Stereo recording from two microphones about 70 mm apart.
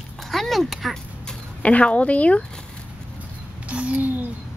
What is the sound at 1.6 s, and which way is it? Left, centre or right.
Speech, centre.